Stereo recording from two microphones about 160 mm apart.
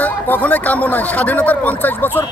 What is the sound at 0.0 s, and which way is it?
A man's voice, 10° left (ahead or behind).